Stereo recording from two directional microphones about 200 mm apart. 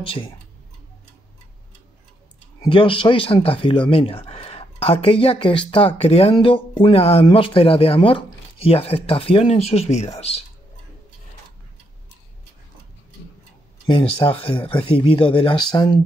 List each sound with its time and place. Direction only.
0.0 s speech: 25° left (ahead or behind)
2.6 s speech: 25° left (ahead or behind)
13.8 s speech: 25° left (ahead or behind)